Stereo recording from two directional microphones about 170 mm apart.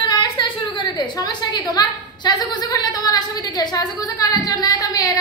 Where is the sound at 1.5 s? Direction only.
25° left (ahead or behind).